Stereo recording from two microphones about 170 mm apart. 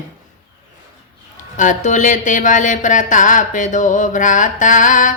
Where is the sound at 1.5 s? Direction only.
45° left (ahead or behind).